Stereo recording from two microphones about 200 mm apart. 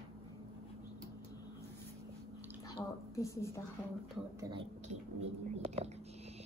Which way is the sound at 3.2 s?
15° left (ahead or behind).